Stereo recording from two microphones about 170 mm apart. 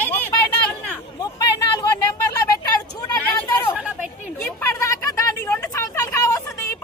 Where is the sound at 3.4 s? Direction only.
10° left (ahead or behind).